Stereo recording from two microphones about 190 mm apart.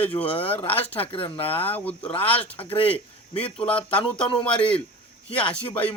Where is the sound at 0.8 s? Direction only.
10° left (ahead or behind).